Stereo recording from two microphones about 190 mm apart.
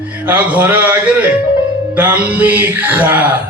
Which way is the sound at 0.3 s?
10° right (ahead or behind).